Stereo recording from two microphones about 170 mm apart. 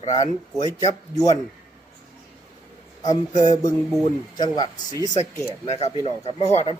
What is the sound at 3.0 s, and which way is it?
Speech, 20° left (ahead or behind).